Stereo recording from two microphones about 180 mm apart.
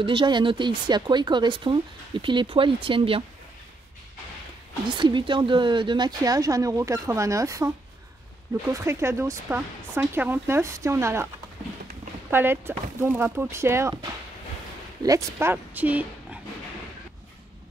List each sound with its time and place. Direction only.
0.0 s speech: 30° right (ahead or behind)
4.8 s speech: 25° right (ahead or behind)
8.7 s speech: 15° right (ahead or behind)
12.3 s speech: 10° right (ahead or behind)
15.0 s speech: 15° right (ahead or behind)